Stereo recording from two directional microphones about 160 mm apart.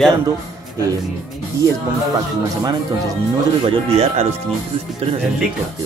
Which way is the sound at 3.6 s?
40° right (ahead or behind).